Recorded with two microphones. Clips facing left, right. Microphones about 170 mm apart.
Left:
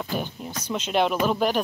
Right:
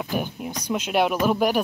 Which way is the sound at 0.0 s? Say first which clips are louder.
Right 2 dB; 10° right (ahead or behind).